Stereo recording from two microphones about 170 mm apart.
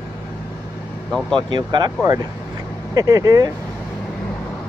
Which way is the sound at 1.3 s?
25° right (ahead or behind).